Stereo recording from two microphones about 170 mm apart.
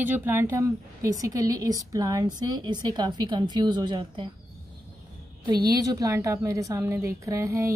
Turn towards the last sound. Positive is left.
turn(degrees=-15)  # may be behind; listen again after turning